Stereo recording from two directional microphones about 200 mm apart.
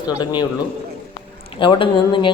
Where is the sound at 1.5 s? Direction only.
25° left (ahead or behind).